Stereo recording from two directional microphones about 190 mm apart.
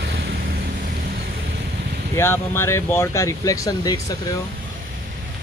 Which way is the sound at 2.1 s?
10° left (ahead or behind).